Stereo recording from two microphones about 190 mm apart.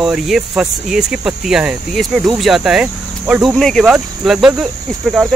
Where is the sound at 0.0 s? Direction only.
5° right (ahead or behind).